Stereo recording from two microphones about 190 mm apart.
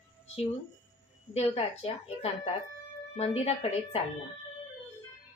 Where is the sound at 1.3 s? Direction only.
30° left (ahead or behind).